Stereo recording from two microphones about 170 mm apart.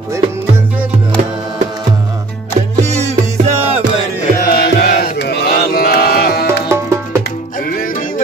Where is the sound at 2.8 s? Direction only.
40° right (ahead or behind).